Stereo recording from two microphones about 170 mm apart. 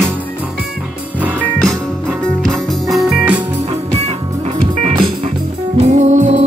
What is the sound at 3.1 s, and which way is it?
Music, 5° right (ahead or behind).